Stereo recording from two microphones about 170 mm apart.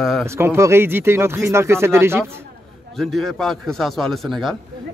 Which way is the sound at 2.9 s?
Centre (ahead or behind).